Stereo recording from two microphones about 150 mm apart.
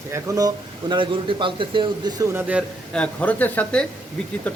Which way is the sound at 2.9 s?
10° left (ahead or behind).